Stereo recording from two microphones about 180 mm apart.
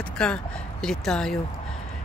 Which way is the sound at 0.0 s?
5° left (ahead or behind).